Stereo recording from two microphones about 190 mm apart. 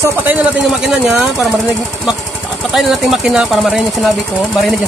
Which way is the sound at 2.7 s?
Centre (ahead or behind).